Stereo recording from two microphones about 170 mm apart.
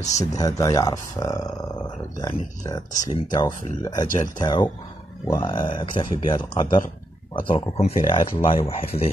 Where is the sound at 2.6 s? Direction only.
20° left (ahead or behind).